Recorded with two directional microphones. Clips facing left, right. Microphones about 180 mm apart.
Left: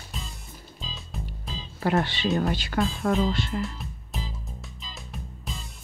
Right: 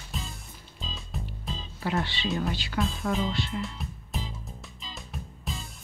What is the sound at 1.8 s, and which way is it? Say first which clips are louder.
Speech: left 5 dB; 50° left (ahead or behind).